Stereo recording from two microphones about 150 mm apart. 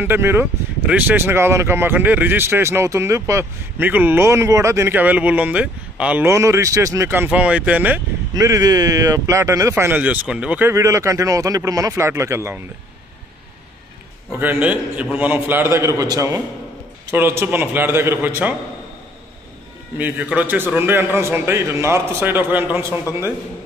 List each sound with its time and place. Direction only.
0.0 s speech: 15° right (ahead or behind)
6.2 s speech: 20° right (ahead or behind)
8.4 s speech: 25° right (ahead or behind)
14.4 s speech: 10° right (ahead or behind)
20.0 s speech: 10° right (ahead or behind)